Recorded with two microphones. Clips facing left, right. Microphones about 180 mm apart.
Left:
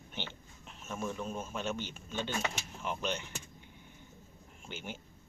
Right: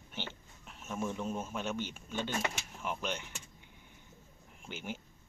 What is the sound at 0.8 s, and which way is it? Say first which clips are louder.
Speech: right 1 dB; 15° right (ahead or behind).